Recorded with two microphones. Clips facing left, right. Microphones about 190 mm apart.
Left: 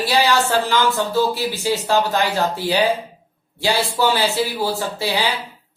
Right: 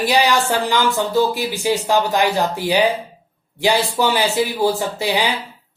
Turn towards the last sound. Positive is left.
turn(degrees=-15)  # may be behind; listen again after turning